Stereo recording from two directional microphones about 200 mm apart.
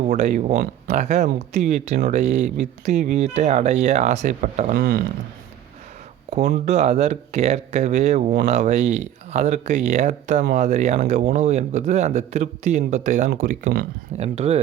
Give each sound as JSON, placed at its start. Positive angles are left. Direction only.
{"t": 0.0, "sound": "speech", "side_deg": -35}
{"t": 0.9, "sound": "speech", "side_deg": -35}
{"t": 6.7, "sound": "speech", "side_deg": -35}
{"t": 14.2, "sound": "speech", "side_deg": -30}